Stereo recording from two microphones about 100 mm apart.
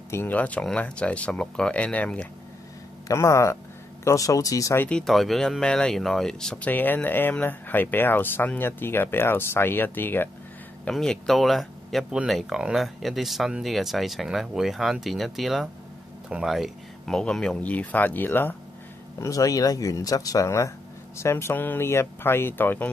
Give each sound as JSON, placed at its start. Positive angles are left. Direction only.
{"t": 0.1, "sound": "speech", "side_deg": 20}
{"t": 3.1, "sound": "speech", "side_deg": 30}
{"t": 4.7, "sound": "speech", "side_deg": 15}
{"t": 5.0, "sound": "speech", "side_deg": 0}
{"t": 6.7, "sound": "speech", "side_deg": 20}
{"t": 10.9, "sound": "speech", "side_deg": 5}
{"t": 19.1, "sound": "speech", "side_deg": 35}